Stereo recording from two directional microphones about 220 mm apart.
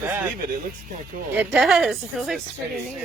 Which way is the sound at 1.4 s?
Centre (ahead or behind).